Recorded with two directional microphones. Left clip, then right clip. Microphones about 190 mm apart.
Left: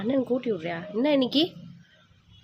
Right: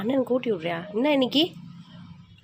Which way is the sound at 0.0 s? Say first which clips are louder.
Right 2 dB; 5° left (ahead or behind).